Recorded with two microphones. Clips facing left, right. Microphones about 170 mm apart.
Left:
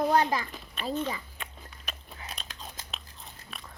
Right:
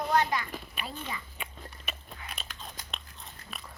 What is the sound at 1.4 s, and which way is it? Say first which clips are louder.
Biting: right 2 dB; 5° right (ahead or behind).